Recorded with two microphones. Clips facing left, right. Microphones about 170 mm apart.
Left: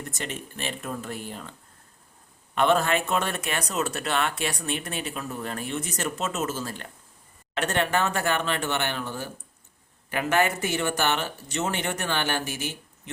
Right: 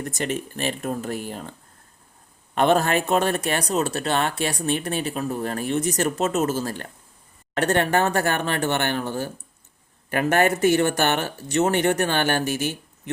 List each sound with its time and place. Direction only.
0.1 s speech: 40° right (ahead or behind)
2.6 s speech: 40° right (ahead or behind); by 12.7 s 60° right (ahead or behind)